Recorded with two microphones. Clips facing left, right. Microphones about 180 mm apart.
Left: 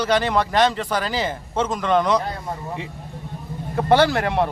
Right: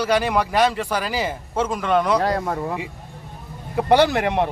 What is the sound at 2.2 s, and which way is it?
Speech, 85° right.